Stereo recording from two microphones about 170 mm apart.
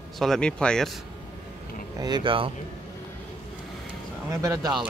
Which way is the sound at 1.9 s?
25° right (ahead or behind).